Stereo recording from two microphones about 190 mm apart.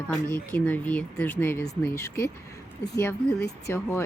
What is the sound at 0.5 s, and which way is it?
Speech, 10° left (ahead or behind).